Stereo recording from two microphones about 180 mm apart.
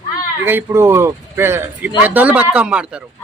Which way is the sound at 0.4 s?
15° right (ahead or behind).